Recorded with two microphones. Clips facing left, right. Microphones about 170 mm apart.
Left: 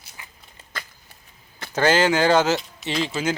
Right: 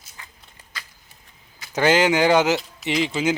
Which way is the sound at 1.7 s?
15° right (ahead or behind).